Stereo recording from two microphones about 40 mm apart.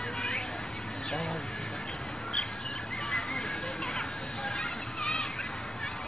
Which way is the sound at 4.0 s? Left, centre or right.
Centre.